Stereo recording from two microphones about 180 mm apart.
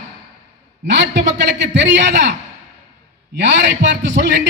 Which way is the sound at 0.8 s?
80° right.